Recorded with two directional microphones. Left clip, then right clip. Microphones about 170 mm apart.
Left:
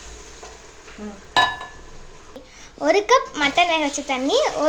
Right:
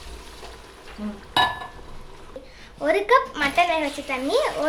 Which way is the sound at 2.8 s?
20° left (ahead or behind).